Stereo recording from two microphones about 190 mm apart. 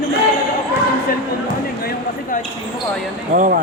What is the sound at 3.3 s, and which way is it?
Speech, 45° right (ahead or behind).